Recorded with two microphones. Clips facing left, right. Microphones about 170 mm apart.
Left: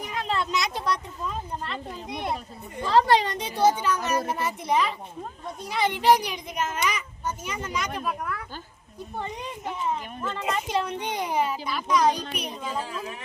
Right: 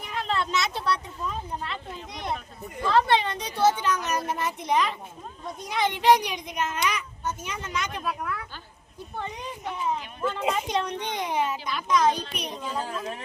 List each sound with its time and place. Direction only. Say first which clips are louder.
0.1 s a sound: right 1 dB; 5° left (ahead or behind)
1.2 s speech: even; centre (ahead or behind)
2.8 s a woman's voice: left 2 dB; 35° left (ahead or behind)
3.4 s a child's voice: left 1 dB; 15° left (ahead or behind)
9.8 s a child's voice: right 2 dB; 5° right (ahead or behind)